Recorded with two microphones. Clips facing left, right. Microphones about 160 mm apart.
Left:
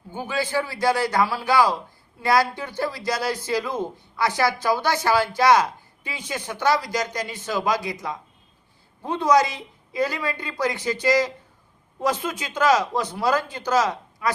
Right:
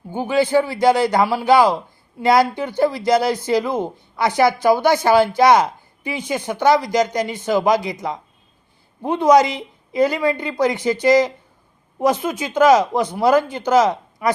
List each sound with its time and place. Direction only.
0.2 s a man's voice: 20° right (ahead or behind)